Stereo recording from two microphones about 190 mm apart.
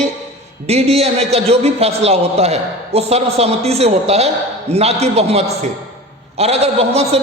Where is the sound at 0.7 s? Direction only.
35° right (ahead or behind).